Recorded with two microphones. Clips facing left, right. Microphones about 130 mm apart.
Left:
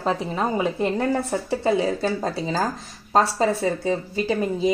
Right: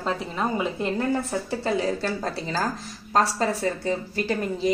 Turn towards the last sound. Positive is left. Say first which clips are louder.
# left 3 dB
turn(degrees=20)  # may be behind; listen again after turning